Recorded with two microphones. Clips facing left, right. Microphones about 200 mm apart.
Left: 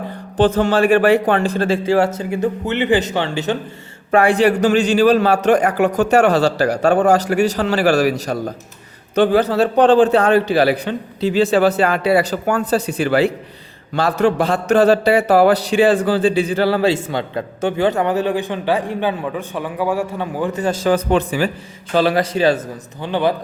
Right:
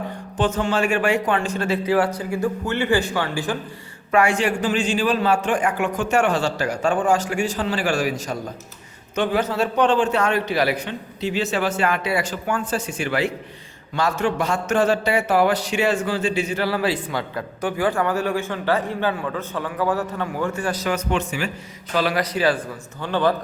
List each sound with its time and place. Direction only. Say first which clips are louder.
0.3 s a man's voice: left 7 dB; 35° left (ahead or behind)
4.6 s a man's voice: left 8 dB; 70° left (ahead or behind)
5.5 s a man's voice: left 7 dB; 40° left (ahead or behind)
6.8 s a man's voice: left 5 dB; 65° left (ahead or behind)
8.3 s speech: left 6 dB; 55° left (ahead or behind)
9.1 s a man's voice: left 7 dB; 35° left (ahead or behind); by 23.3 s 15° left (ahead or behind)